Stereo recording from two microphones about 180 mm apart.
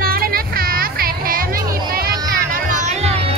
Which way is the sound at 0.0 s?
55° right (ahead or behind).